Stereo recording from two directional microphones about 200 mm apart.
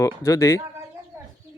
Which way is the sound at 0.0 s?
15° left (ahead or behind).